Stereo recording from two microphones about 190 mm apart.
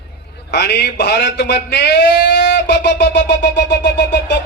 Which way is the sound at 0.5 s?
60° left (ahead or behind).